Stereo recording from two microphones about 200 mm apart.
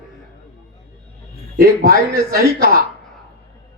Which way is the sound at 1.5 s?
45° right (ahead or behind).